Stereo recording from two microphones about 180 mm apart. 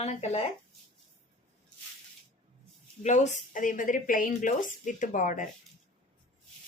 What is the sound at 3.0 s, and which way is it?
A woman's voice, 40° left (ahead or behind).